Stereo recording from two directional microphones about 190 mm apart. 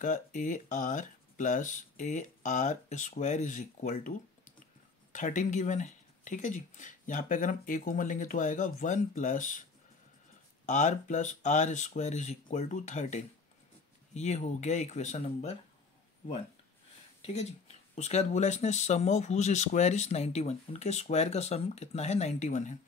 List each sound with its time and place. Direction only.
0.0 s speech: 40° left (ahead or behind)
10.6 s speech: 40° left (ahead or behind)
17.2 s speech: 35° left (ahead or behind)